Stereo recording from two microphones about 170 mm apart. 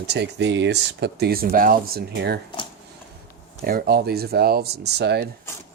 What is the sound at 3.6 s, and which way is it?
Speech, 65° right (ahead or behind).